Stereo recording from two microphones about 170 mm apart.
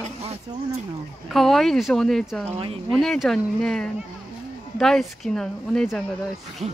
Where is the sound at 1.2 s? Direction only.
Centre (ahead or behind).